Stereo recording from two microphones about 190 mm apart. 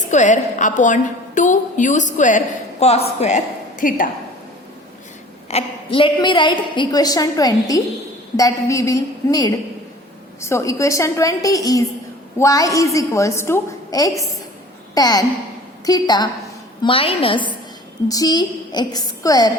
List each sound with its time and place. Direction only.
0.1 s a woman's voice: 40° left (ahead or behind)
5.5 s a woman's voice: 30° left (ahead or behind)